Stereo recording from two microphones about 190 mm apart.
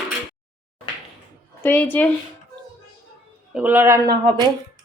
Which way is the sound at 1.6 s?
10° left (ahead or behind).